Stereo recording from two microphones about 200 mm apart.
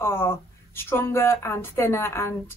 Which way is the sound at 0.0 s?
10° left (ahead or behind).